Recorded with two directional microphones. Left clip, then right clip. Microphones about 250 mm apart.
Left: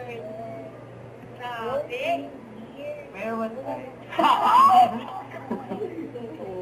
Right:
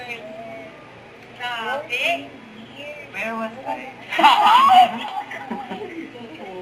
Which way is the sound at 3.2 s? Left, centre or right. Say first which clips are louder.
Right 3 dB; centre.